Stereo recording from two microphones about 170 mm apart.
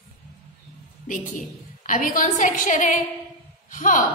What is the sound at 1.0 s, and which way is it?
A woman's voice, 50° left (ahead or behind).